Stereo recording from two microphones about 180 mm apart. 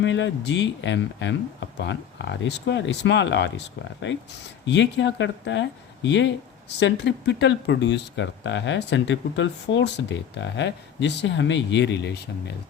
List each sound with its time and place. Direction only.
0.0 s speech: 90° left
4.6 s speech: 85° left
6.7 s speech: 75° left (ahead or behind)